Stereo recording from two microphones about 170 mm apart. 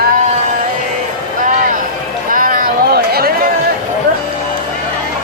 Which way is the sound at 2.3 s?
55° right (ahead or behind).